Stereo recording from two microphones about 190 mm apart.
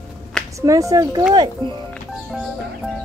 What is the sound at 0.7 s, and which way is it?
Speech, 15° right (ahead or behind).